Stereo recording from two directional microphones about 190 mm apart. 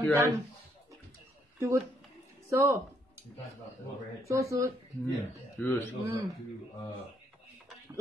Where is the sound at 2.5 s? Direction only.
15° right (ahead or behind).